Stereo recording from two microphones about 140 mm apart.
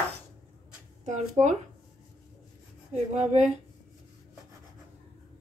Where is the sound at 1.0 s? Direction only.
60° right (ahead or behind).